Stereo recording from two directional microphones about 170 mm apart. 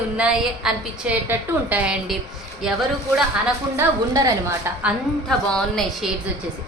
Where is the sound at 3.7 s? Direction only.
20° right (ahead or behind).